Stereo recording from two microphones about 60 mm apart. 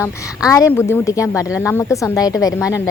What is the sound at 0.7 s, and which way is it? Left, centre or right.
Speech, left.